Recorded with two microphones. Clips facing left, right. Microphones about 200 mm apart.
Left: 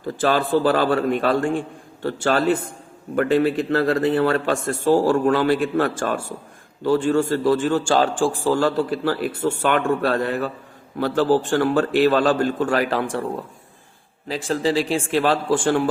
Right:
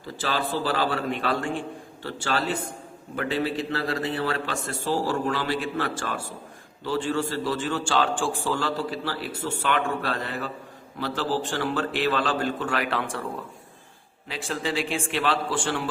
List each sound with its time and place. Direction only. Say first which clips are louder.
0.0 s a man's voice: left 8 dB; 55° left (ahead or behind)
14.3 s a man's voice: left 8 dB; 40° left (ahead or behind)